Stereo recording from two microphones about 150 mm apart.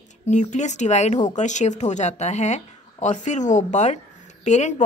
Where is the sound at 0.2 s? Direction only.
50° left (ahead or behind).